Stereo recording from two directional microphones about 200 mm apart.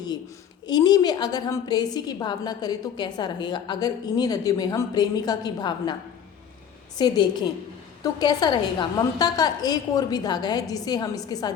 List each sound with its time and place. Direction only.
0.7 s a woman's voice: 20° left (ahead or behind)